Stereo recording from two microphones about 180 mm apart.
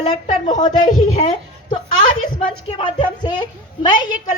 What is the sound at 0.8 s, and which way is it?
Speech, 45° left (ahead or behind).